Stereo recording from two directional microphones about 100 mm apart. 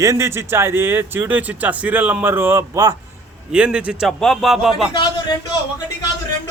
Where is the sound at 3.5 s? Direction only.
10° right (ahead or behind).